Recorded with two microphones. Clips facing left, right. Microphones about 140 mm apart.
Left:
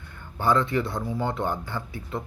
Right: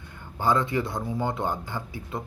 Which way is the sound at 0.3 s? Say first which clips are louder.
Left 1 dB; 20° right (ahead or behind).